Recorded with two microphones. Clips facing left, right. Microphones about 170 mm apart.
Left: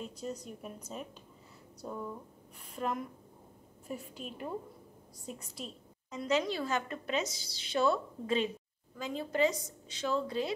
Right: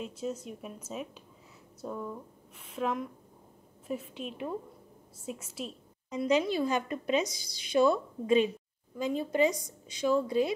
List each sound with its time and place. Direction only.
0.0 s a woman's voice: centre (ahead or behind)
6.0 s a woman's voice: 15° right (ahead or behind)